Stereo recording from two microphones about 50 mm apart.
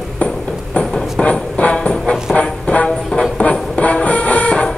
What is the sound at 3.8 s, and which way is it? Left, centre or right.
Music, left.